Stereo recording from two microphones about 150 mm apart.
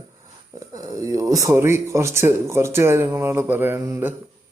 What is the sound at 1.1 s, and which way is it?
Speech, 20° right (ahead or behind).